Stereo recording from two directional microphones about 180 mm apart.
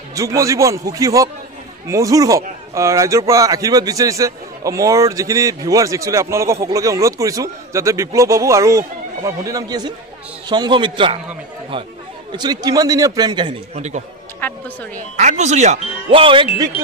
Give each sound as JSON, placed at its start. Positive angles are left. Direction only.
{"t": 0.1, "sound": "a man's voice", "side_deg": -15}
{"t": 12.3, "sound": "a man's voice", "side_deg": -25}
{"t": 14.4, "sound": "a woman's voice", "side_deg": 10}
{"t": 15.1, "sound": "speech", "side_deg": -40}